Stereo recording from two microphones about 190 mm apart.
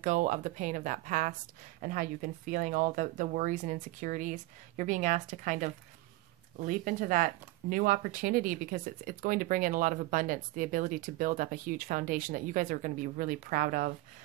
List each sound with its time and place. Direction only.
0.0 s a woman's voice: 40° right (ahead or behind)